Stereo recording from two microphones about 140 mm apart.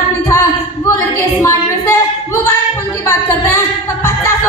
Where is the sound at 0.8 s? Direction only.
20° left (ahead or behind).